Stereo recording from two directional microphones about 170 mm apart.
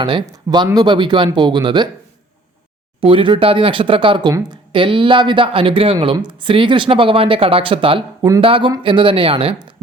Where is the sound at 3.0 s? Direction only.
30° right (ahead or behind).